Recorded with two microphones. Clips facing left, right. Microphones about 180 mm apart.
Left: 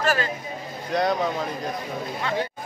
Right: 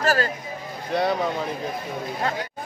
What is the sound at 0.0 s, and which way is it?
Speech, 40° right (ahead or behind).